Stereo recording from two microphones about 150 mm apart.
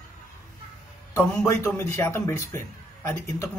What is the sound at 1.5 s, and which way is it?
A man's voice, 15° left (ahead or behind).